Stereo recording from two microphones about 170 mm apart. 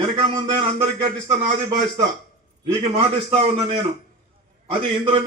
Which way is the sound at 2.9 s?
35° right (ahead or behind).